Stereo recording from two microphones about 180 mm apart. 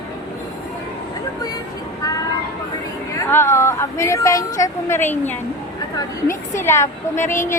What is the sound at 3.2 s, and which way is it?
A woman's voice, 15° left (ahead or behind).